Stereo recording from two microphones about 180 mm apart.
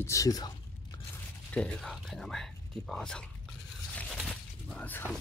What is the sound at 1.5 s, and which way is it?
Speech, 5° left (ahead or behind).